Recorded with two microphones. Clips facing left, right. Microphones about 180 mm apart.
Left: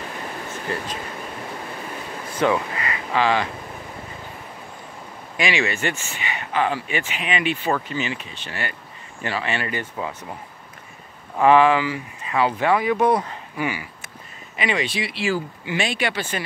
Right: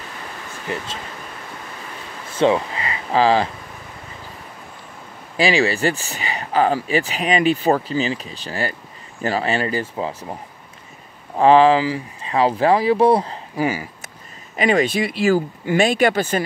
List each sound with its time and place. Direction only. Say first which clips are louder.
0.7 s speech: right 1 dB; 15° right (ahead or behind)
2.3 s speech: right 4 dB; 25° right (ahead or behind)
5.4 s speech: right 6 dB; 35° right (ahead or behind)
11.3 s speech: right 3 dB; 30° right (ahead or behind)